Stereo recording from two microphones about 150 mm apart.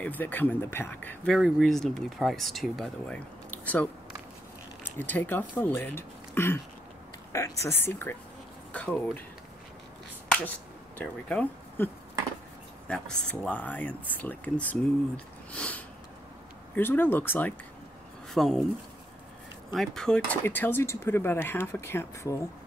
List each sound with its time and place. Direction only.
0.0 s speech: 10° left (ahead or behind)
10.2 s finger snapping: 10° left (ahead or behind)
11.0 s speech: 10° left (ahead or behind)
18.3 s speech: centre (ahead or behind)
19.7 s speech: centre (ahead or behind); by 22.4 s 15° left (ahead or behind)